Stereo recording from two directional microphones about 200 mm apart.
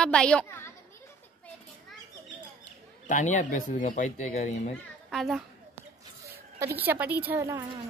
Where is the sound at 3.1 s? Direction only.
40° left (ahead or behind).